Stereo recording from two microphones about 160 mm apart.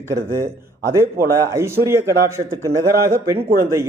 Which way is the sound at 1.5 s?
15° right (ahead or behind).